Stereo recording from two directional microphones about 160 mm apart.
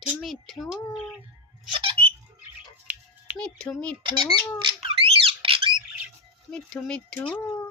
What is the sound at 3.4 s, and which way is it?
Speech, 5° left (ahead or behind).